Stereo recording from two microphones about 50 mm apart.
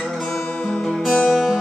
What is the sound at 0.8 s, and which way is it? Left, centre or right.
Music, centre.